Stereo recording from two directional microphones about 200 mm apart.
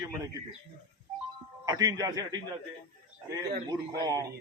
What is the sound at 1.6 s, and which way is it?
Speech, 20° right (ahead or behind).